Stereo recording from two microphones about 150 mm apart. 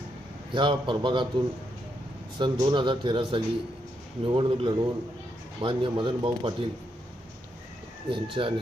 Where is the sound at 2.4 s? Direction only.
30° right (ahead or behind).